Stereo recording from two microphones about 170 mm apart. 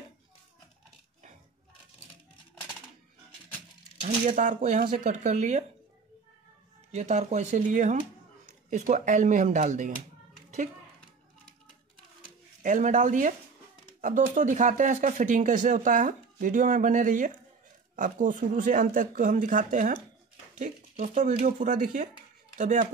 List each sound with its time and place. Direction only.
2.5 s coin: centre (ahead or behind)
4.0 s speech: 45° right (ahead or behind)
6.9 s speech: 40° right (ahead or behind)
12.6 s speech: 45° right (ahead or behind)